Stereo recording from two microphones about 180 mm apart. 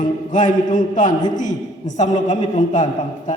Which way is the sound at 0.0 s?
45° left (ahead or behind).